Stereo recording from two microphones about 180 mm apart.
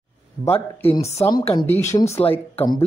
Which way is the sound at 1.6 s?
15° left (ahead or behind).